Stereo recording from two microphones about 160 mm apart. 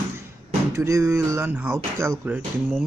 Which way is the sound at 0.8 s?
20° right (ahead or behind).